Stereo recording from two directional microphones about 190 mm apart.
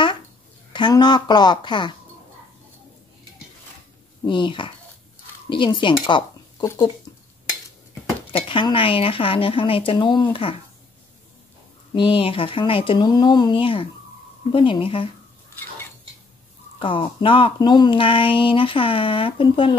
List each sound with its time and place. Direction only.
0.7 s speech: 25° left (ahead or behind)
4.2 s speech: 25° left (ahead or behind)
8.3 s speech: 25° left (ahead or behind)
11.9 s speech: 25° left (ahead or behind)
16.8 s speech: 25° left (ahead or behind)